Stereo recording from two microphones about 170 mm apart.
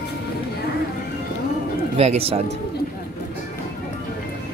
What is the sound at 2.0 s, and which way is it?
Speech, 35° right (ahead or behind).